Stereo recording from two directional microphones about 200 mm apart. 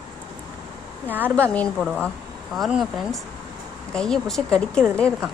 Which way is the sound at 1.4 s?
5° left (ahead or behind).